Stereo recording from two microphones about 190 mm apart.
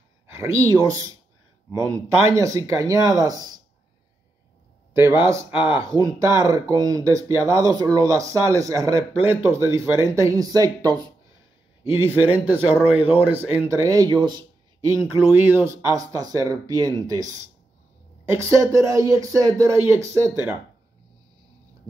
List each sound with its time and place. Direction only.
0.3 s speech: 15° right (ahead or behind)
2.3 s speech: 15° right (ahead or behind)
4.9 s speech: 15° right (ahead or behind)
5.5 s speech: 25° left (ahead or behind)
5.9 s speech: 20° right (ahead or behind)